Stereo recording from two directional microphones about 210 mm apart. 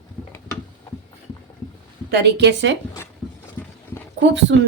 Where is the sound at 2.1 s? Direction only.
50° right (ahead or behind).